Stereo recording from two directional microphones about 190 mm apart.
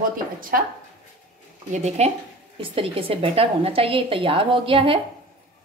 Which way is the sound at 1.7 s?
35° right (ahead or behind).